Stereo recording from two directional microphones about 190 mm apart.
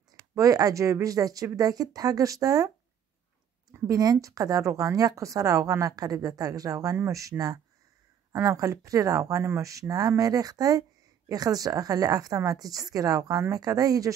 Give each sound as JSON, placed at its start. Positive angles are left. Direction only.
{"t": 0.3, "sound": "a woman's voice", "side_deg": -20}
{"t": 3.7, "sound": "a woman's voice", "side_deg": -15}